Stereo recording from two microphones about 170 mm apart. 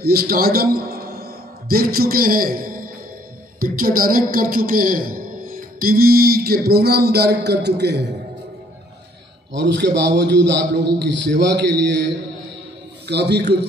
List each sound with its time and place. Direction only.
0.0 s a man's voice: 65° right (ahead or behind)
9.5 s a man's voice: 90° right
13.1 s a man's voice: 80° right